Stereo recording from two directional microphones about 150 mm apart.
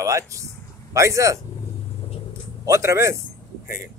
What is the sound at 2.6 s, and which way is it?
Speech, 20° right (ahead or behind).